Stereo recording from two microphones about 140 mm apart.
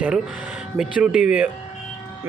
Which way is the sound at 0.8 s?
5° right (ahead or behind).